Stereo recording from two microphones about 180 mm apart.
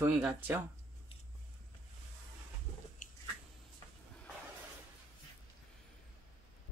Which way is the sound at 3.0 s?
45° left (ahead or behind).